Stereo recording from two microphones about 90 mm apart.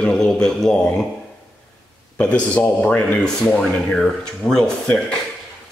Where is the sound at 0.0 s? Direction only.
10° left (ahead or behind).